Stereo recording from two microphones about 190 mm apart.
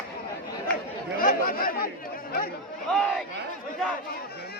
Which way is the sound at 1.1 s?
50° left (ahead or behind).